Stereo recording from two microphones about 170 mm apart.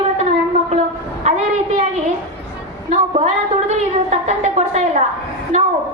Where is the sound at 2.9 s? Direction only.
40° right (ahead or behind).